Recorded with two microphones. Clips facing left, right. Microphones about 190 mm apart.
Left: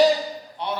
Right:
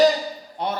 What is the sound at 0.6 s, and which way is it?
Speech, 45° right (ahead or behind).